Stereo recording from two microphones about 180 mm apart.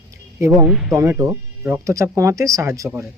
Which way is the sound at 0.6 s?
5° right (ahead or behind).